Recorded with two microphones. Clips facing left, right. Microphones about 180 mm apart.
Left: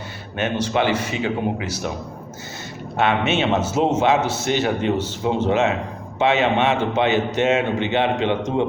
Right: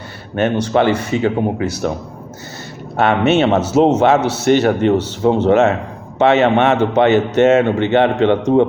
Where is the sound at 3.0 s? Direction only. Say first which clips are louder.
Right 6 dB; 45° right (ahead or behind).